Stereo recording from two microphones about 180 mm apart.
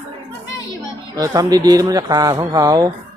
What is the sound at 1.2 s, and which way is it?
Speech, 20° right (ahead or behind).